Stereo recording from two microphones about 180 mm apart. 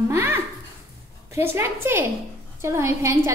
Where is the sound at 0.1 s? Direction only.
15° right (ahead or behind).